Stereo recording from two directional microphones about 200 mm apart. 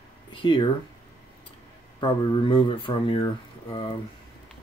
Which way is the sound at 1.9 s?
25° left (ahead or behind).